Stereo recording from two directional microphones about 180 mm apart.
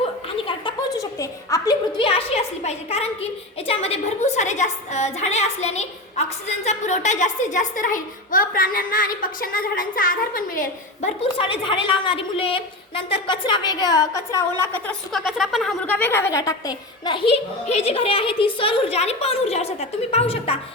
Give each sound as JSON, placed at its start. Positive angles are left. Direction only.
{"t": 0.0, "sound": "chuckle", "side_deg": 30}
{"t": 0.9, "sound": "a woman's voice", "side_deg": 20}
{"t": 11.2, "sound": "a woman's voice", "side_deg": 30}
{"t": 15.1, "sound": "a woman's voice", "side_deg": 0}